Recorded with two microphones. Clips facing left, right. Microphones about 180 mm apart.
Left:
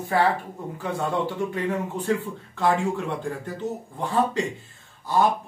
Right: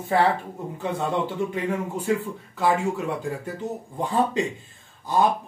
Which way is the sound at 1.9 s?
10° right (ahead or behind).